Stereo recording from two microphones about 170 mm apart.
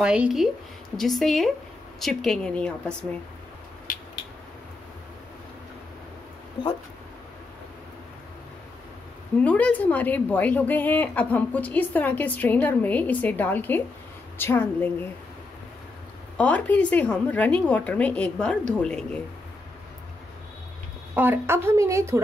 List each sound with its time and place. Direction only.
0.0 s a woman's voice: 5° right (ahead or behind)
3.9 s a sound: 55° left (ahead or behind)
9.4 s a woman's voice: 10° left (ahead or behind)
16.3 s a woman's voice: 10° left (ahead or behind)
21.1 s a woman's voice: 10° right (ahead or behind)